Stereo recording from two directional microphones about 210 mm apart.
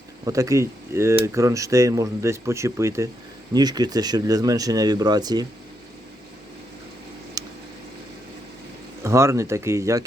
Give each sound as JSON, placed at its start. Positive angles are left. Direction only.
{"t": 0.3, "sound": "speech", "side_deg": -15}
{"t": 7.4, "sound": "a sound", "side_deg": -15}
{"t": 9.0, "sound": "speech", "side_deg": -15}